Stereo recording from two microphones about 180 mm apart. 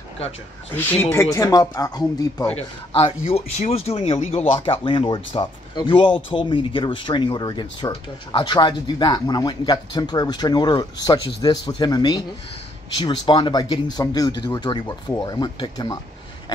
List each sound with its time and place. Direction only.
0.7 s speech: 10° left (ahead or behind)
2.5 s speech: 30° left (ahead or behind)